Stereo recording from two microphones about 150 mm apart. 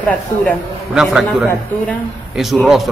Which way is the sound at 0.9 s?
5° right (ahead or behind).